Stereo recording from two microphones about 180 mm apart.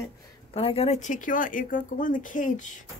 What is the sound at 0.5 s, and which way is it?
Speech, 35° left (ahead or behind).